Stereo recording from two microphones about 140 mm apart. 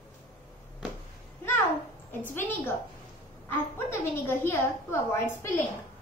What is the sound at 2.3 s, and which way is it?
A woman's voice, 15° left (ahead or behind).